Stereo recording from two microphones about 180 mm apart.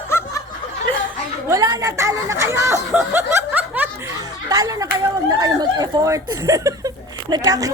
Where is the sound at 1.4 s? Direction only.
20° right (ahead or behind).